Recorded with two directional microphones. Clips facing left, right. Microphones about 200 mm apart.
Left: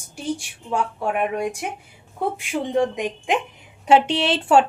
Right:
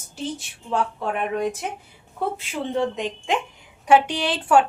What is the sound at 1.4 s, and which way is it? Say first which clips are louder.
A woman's voice: even; 10° left (ahead or behind).